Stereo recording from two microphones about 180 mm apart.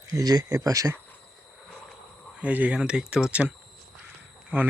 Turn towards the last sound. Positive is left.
turn(degrees=-10)  # may be behind; listen again after turning